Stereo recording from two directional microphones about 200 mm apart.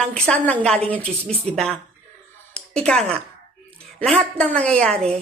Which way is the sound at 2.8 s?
5° left (ahead or behind).